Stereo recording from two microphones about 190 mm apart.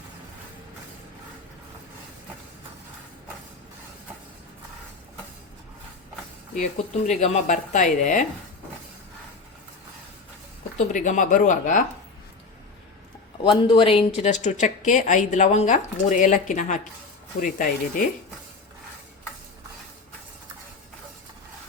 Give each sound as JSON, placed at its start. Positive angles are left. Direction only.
{"t": 7.1, "sound": "a woman's voice", "side_deg": 40}
{"t": 10.8, "sound": "a woman's voice", "side_deg": 40}
{"t": 13.4, "sound": "a woman's voice", "side_deg": 30}